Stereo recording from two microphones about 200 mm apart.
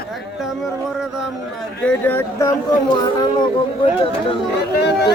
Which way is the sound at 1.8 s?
10° left (ahead or behind).